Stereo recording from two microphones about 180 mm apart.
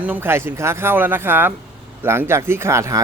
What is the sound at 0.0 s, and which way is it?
Speech, 10° right (ahead or behind).